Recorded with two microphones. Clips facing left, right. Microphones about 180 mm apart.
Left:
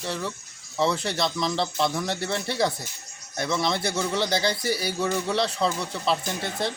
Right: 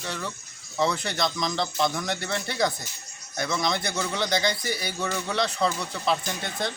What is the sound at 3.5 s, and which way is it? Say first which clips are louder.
Speech: left 2 dB; 5° left (ahead or behind).